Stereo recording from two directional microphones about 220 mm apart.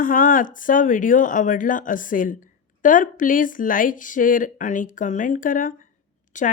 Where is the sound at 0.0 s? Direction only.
40° left (ahead or behind).